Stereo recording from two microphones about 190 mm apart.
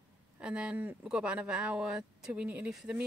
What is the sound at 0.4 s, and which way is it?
Speech, 5° right (ahead or behind).